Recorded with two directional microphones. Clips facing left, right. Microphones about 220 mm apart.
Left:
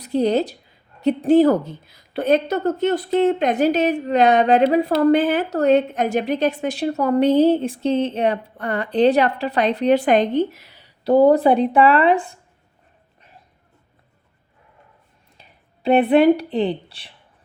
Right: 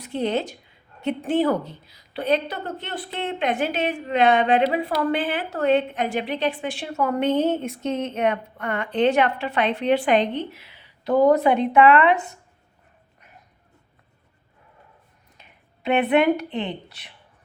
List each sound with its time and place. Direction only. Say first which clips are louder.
0.0 s a woman's voice: left 6 dB; 40° left (ahead or behind)
15.4 s speech: left 2 dB; 35° left (ahead or behind)